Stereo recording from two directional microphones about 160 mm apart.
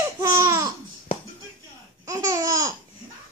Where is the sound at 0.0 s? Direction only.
20° right (ahead or behind).